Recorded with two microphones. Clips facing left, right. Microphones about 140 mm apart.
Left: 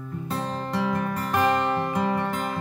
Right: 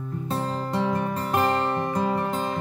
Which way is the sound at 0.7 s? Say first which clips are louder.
Even; 25° right (ahead or behind).